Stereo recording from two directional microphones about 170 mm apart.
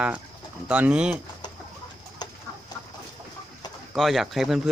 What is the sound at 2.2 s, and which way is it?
Chicken, 25° left (ahead or behind).